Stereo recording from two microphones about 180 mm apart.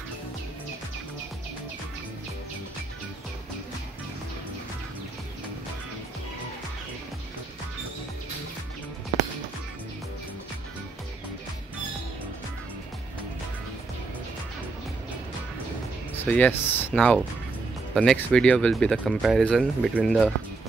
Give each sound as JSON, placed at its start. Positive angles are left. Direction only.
{"t": 16.3, "sound": "speech", "side_deg": 10}